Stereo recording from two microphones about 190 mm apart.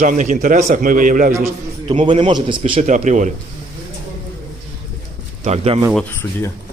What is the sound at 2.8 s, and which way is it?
Speech, 40° right (ahead or behind).